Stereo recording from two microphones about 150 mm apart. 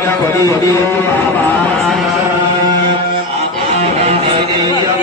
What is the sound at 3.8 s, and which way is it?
Music, 45° right (ahead or behind).